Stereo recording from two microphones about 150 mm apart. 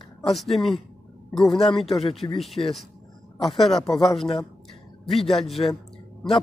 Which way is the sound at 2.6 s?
30° left (ahead or behind).